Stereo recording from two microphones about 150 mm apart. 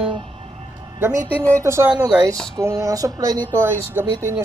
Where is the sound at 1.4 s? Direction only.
10° left (ahead or behind).